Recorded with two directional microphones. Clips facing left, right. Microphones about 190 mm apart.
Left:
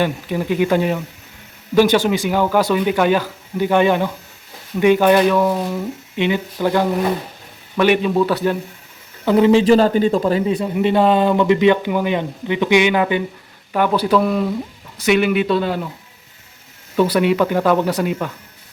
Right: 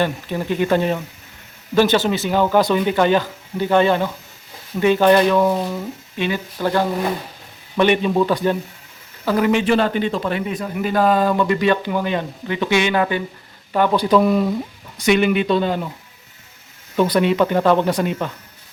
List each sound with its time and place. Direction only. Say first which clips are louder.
0.0 s speech: left 1 dB; 10° left (ahead or behind)
6.1 s a man's voice: left 4 dB; 20° left (ahead or behind)
9.2 s a man's voice: left 5 dB; 25° left (ahead or behind); by 15.9 s 5° left (ahead or behind)
17.0 s speech: left 1 dB; 10° left (ahead or behind)